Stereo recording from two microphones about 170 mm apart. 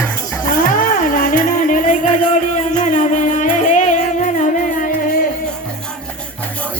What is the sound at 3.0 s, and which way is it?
Music, 50° left (ahead or behind).